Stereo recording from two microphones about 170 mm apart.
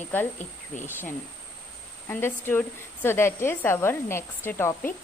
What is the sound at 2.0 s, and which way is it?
Speech, 15° left (ahead or behind).